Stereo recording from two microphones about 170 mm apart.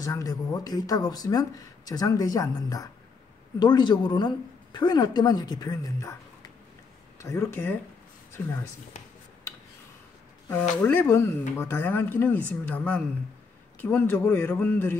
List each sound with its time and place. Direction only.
0.0 s speech: 20° left (ahead or behind)
7.2 s speech: 15° left (ahead or behind)
10.8 s speech: 10° left (ahead or behind)